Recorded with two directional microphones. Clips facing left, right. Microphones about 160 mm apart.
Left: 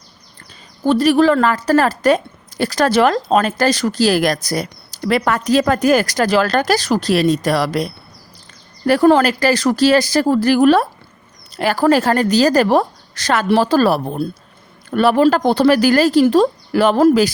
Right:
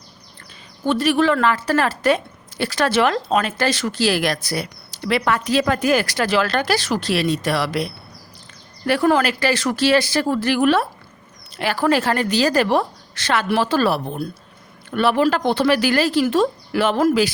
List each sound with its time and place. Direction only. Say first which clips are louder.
0.9 s a woman's voice: left 5 dB; 35° left (ahead or behind)